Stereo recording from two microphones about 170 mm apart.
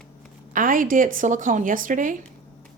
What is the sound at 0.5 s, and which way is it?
A woman's voice, 55° right (ahead or behind).